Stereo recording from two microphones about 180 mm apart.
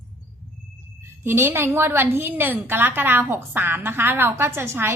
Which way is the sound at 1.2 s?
15° right (ahead or behind).